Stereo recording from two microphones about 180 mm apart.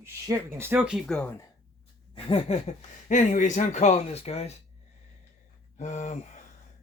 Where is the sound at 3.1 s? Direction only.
45° left (ahead or behind).